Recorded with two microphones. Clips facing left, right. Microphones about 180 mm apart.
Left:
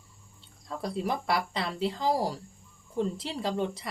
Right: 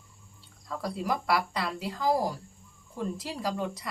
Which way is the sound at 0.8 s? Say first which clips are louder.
Even; 25° left (ahead or behind).